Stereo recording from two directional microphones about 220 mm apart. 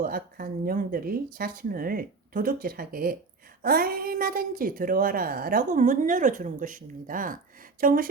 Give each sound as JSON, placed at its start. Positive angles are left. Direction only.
{"t": 0.0, "sound": "a woman's voice", "side_deg": -40}